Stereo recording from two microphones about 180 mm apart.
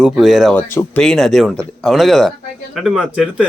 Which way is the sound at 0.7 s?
15° left (ahead or behind).